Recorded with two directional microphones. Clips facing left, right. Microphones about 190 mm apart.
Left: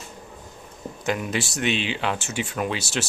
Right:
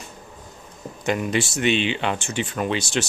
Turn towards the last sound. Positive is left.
turn(degrees=5)  # may be behind; listen again after turning